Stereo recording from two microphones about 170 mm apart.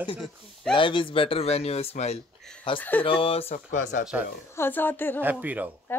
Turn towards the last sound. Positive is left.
turn(degrees=-10)  # may be behind; listen again after turning